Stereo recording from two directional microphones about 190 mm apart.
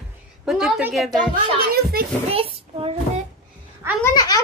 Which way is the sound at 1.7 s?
50° right (ahead or behind).